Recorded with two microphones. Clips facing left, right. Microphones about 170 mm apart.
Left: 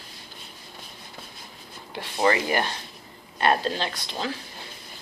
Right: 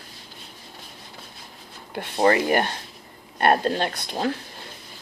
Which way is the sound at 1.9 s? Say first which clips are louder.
Right 4 dB; 55° right (ahead or behind).